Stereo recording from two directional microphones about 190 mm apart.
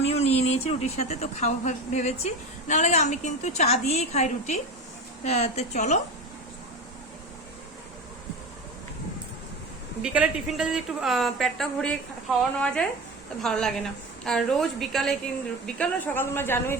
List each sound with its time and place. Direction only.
0.0 s a woman's voice: 35° left (ahead or behind)
10.0 s a woman's voice: 5° right (ahead or behind); by 16.7 s 10° left (ahead or behind)